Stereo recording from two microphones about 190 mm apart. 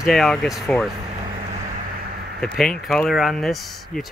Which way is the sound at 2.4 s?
5° left (ahead or behind).